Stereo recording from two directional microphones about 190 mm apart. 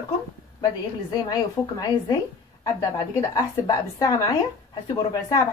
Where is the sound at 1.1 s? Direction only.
20° left (ahead or behind).